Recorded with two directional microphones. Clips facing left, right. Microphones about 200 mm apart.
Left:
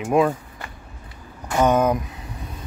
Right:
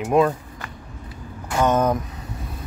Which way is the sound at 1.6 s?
10° left (ahead or behind).